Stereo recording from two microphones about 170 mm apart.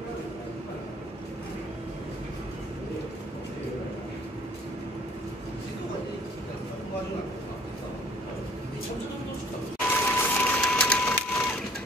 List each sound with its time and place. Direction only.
9.8 s crushing: 10° left (ahead or behind)